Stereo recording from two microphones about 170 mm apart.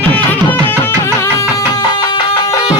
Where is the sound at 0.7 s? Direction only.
15° left (ahead or behind).